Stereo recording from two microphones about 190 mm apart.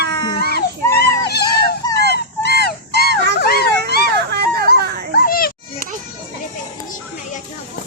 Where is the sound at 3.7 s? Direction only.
60° right (ahead or behind).